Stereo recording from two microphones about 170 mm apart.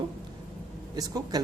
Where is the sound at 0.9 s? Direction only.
20° right (ahead or behind).